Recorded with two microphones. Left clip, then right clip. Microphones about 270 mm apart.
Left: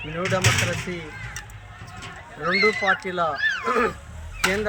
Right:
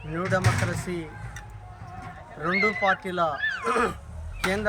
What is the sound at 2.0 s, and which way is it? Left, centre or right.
Speech, centre.